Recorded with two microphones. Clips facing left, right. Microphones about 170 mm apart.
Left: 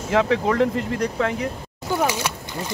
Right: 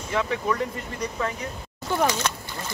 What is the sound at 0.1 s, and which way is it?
Speech, 90° left.